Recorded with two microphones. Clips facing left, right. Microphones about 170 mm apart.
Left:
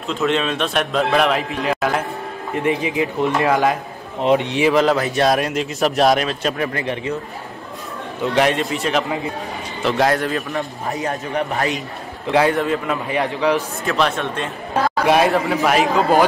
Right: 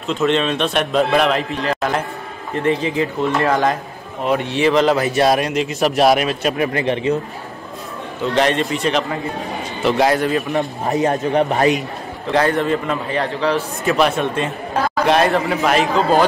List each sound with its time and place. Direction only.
0.1 s a man's voice: centre (ahead or behind)
4.2 s a man's voice: 20° left (ahead or behind); by 6.7 s 10° right (ahead or behind)
6.7 s a man's voice: 25° right (ahead or behind)
8.2 s a man's voice: 5° left (ahead or behind)
10.5 s a man's voice: 25° right (ahead or behind)
12.3 s a man's voice: 10° left (ahead or behind)
13.2 s speech: 15° left (ahead or behind)
13.8 s speech: 5° right (ahead or behind)
15.0 s a man's voice: 5° left (ahead or behind)